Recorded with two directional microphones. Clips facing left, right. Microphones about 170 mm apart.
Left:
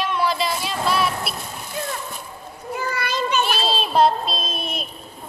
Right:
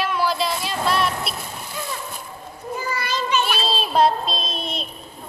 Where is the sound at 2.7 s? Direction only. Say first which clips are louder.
Left 2 dB; 60° left (ahead or behind).